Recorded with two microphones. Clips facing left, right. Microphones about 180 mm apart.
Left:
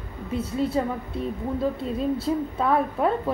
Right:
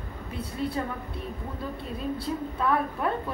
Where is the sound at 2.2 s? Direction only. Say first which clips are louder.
Left 5 dB; 25° left (ahead or behind).